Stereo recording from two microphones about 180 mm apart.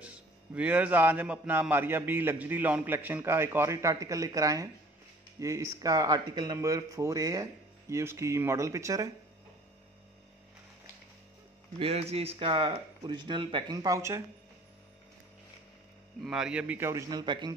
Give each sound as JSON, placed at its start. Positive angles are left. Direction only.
{"t": 0.0, "sound": "a man's voice", "side_deg": -5}
{"t": 11.8, "sound": "speech", "side_deg": -35}
{"t": 16.3, "sound": "a man's voice", "side_deg": -5}